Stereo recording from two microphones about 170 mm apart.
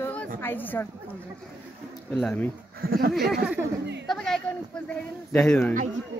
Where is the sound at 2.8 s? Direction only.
60° right (ahead or behind).